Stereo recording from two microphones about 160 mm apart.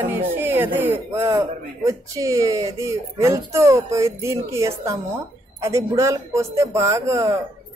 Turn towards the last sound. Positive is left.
turn(degrees=-20)  # may be behind; listen again after turning